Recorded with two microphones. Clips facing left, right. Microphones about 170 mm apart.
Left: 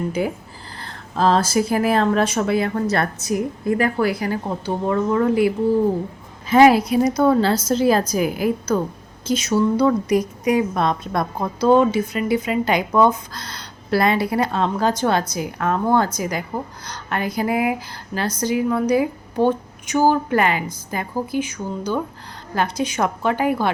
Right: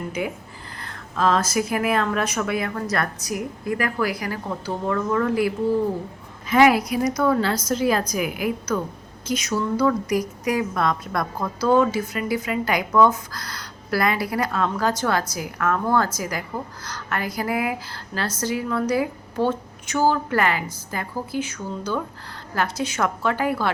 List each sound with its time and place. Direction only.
0.2 s a woman's voice: 35° left (ahead or behind)
6.5 s a woman's voice: 30° left (ahead or behind)